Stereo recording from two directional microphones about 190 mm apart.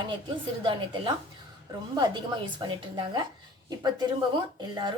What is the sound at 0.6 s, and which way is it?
A woman's voice, 25° right (ahead or behind).